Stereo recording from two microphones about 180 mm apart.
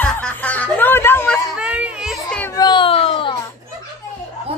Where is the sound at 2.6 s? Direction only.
25° left (ahead or behind).